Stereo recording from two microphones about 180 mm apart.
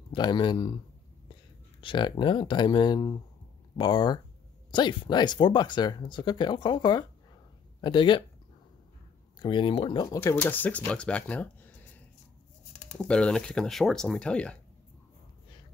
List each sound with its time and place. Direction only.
0.1 s speech: 25° left (ahead or behind)
1.8 s speech: 25° left (ahead or behind)
9.4 s speech: 25° left (ahead or behind)
10.2 s speech: 10° left (ahead or behind)
12.9 s speech: 5° left (ahead or behind)